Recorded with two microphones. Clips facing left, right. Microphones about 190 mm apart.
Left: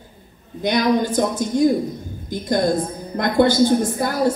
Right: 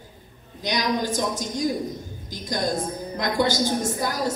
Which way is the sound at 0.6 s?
55° left (ahead or behind).